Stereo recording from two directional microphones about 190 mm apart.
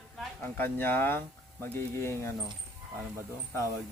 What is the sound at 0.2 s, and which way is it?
A man's voice, 10° left (ahead or behind).